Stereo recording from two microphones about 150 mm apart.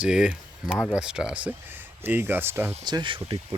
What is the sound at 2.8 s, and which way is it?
Speech, 30° right (ahead or behind).